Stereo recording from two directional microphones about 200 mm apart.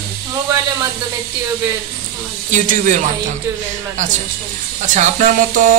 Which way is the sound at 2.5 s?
40° right (ahead or behind).